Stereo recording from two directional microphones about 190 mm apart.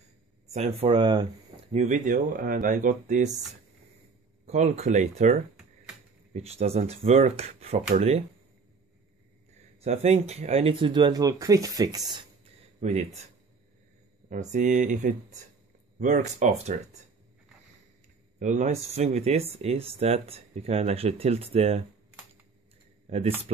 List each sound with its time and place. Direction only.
0.5 s speech: 35° right (ahead or behind)
1.7 s speech: 40° right (ahead or behind)
4.5 s speech: 35° right (ahead or behind)
9.8 s speech: 35° right (ahead or behind)
14.3 s speech: 40° right (ahead or behind)
18.4 s speech: 40° right (ahead or behind)
23.0 s speech: 35° right (ahead or behind)